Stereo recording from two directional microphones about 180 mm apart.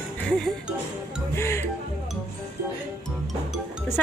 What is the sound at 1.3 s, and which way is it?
Music, 15° left (ahead or behind).